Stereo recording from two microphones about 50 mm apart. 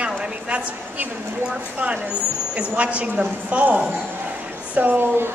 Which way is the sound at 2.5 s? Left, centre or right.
Right.